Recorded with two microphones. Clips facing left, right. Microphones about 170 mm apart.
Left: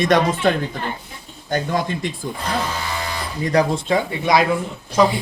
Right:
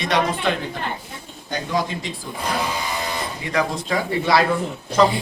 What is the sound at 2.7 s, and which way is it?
Music, 15° right (ahead or behind).